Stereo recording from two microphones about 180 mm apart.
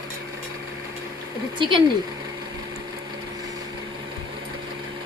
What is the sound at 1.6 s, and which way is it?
Speech, 25° right (ahead or behind).